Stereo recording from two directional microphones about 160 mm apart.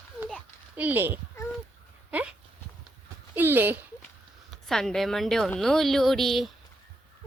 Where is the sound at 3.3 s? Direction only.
15° right (ahead or behind).